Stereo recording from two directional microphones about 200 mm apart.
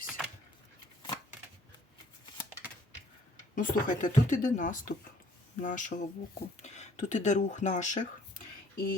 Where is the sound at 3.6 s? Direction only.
40° left (ahead or behind).